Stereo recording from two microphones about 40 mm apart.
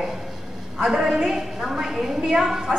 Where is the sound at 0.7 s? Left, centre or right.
Centre.